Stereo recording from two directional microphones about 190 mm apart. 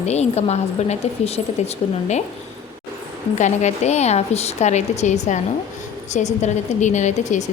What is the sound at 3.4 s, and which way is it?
A woman's voice, 35° left (ahead or behind).